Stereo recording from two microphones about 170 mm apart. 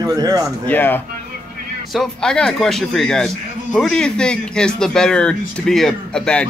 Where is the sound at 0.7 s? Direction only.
10° left (ahead or behind).